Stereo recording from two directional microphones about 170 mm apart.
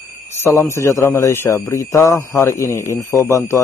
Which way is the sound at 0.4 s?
15° left (ahead or behind).